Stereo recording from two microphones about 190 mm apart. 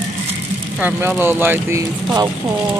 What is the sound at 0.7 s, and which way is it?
Speech, 10° right (ahead or behind).